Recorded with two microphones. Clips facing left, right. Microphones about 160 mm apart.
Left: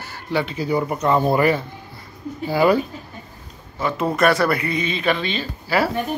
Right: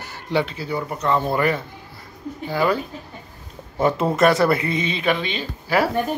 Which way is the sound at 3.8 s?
55° right (ahead or behind).